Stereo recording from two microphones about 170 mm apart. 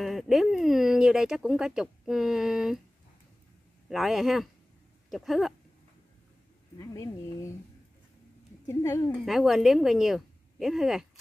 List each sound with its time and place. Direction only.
0.0 s speech: centre (ahead or behind)
3.9 s speech: centre (ahead or behind)
6.8 s speech: 20° left (ahead or behind)
8.6 s speech: 15° left (ahead or behind)
9.2 s speech: centre (ahead or behind)